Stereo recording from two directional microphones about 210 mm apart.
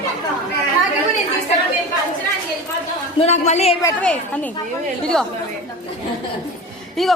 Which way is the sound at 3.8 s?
5° left (ahead or behind).